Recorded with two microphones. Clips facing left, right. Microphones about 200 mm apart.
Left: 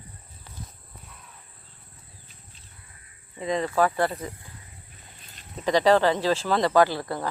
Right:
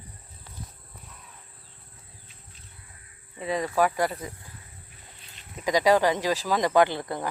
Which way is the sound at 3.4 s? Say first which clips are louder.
Left 1 dB; 10° right (ahead or behind).